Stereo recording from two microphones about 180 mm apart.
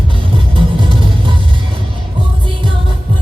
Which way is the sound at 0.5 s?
30° right (ahead or behind).